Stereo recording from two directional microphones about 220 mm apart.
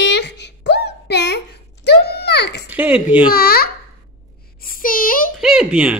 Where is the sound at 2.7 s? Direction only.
5° right (ahead or behind).